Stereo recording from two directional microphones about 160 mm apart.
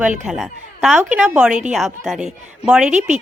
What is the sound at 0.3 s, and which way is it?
A woman's voice, centre (ahead or behind).